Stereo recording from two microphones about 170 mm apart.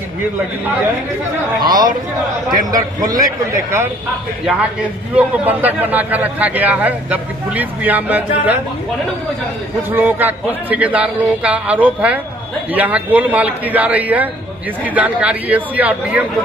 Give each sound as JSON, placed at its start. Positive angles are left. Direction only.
{"t": 1.6, "sound": "a man's voice", "side_deg": -25}
{"t": 5.1, "sound": "speech", "side_deg": -10}
{"t": 9.8, "sound": "speech", "side_deg": -10}